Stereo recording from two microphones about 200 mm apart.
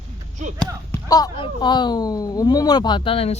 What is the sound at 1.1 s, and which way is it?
Speech, 20° left (ahead or behind).